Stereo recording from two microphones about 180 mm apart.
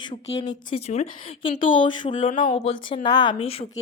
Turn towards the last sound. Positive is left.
turn(degrees=30)  # may be behind; listen again after turning